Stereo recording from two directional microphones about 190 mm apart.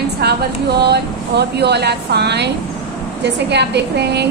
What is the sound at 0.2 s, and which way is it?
A woman's voice, 60° right (ahead or behind).